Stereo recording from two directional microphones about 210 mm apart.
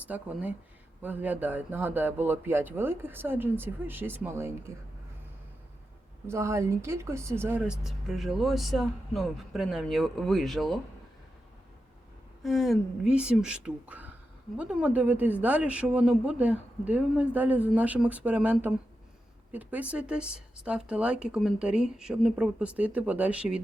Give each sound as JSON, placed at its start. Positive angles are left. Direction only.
{"t": 0.1, "sound": "speech", "side_deg": -5}
{"t": 6.2, "sound": "speech", "side_deg": -15}
{"t": 12.4, "sound": "speech", "side_deg": 0}